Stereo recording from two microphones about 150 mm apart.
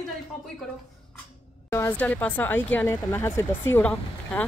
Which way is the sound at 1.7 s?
15° left (ahead or behind).